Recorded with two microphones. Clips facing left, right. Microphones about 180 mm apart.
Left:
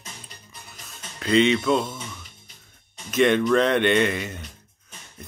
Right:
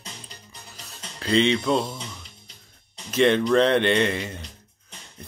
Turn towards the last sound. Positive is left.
turn(degrees=-30)  # may be behind; listen again after turning